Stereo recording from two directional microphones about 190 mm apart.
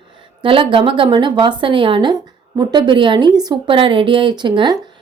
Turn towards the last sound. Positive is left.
turn(degrees=-25)  # may be behind; listen again after turning